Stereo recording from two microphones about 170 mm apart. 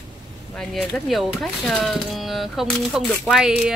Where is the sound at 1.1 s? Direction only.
Centre (ahead or behind).